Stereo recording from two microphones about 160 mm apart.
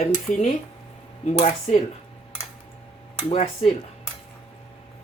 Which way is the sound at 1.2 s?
45° left (ahead or behind).